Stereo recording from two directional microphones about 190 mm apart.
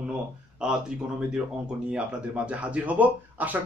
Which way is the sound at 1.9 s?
5° right (ahead or behind).